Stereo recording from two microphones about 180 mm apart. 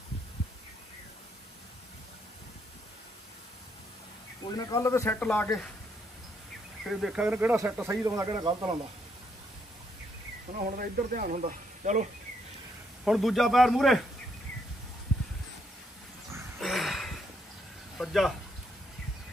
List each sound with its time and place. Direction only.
4.5 s a man's voice: 20° left (ahead or behind)
6.8 s speech: centre (ahead or behind); by 8.7 s 25° right (ahead or behind)
10.8 s speech: 50° right (ahead or behind)
13.0 s a man's voice: centre (ahead or behind)
16.5 s a sound: centre (ahead or behind)
17.9 s speech: centre (ahead or behind)